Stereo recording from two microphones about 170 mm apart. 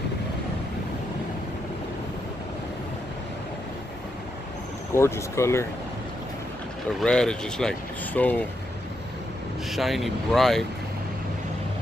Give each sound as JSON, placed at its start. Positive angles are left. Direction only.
{"t": 4.9, "sound": "speech", "side_deg": 15}
{"t": 7.0, "sound": "speech", "side_deg": 5}
{"t": 9.7, "sound": "speech", "side_deg": 0}